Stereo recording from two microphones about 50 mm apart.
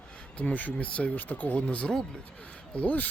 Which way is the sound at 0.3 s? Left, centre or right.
Left.